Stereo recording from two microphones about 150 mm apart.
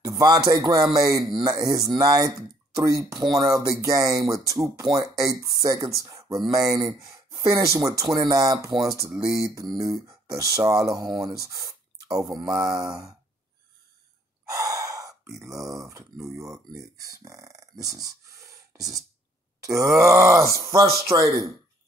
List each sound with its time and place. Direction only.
0.0 s a sound: 25° right (ahead or behind)
0.5 s speech: 25° right (ahead or behind)
14.4 s gasp: 25° right (ahead or behind)
15.4 s speech: centre (ahead or behind)
15.8 s speech: 20° right (ahead or behind)